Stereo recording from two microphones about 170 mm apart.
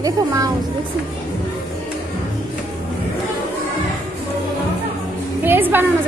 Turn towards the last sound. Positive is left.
turn(degrees=-10)  # may be behind; listen again after turning